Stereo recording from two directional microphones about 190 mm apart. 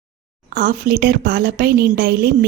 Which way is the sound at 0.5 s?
50° right (ahead or behind).